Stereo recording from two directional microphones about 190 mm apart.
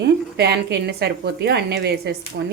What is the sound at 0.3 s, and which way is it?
Speech, 60° right (ahead or behind).